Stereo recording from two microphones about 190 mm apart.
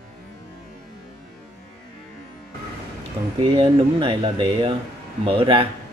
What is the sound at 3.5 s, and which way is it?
Speech, 25° right (ahead or behind).